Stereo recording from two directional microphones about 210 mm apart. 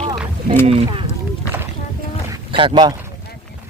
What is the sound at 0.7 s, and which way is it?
Speech, 25° right (ahead or behind).